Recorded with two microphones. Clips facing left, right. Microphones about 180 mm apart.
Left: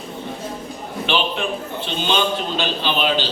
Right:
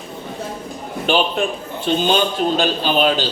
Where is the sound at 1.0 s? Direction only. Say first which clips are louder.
Right 4 dB; 45° right (ahead or behind).